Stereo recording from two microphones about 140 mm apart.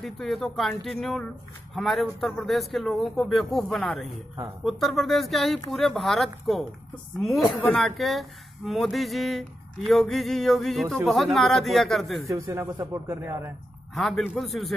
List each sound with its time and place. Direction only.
0.0 s speech: centre (ahead or behind)
12.3 s speech: 15° right (ahead or behind)
13.9 s speech: centre (ahead or behind)